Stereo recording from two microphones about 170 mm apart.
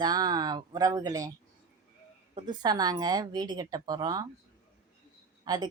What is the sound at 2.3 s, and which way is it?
Speech, 25° right (ahead or behind).